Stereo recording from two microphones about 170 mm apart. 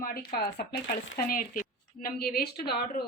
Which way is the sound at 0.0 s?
60° left (ahead or behind).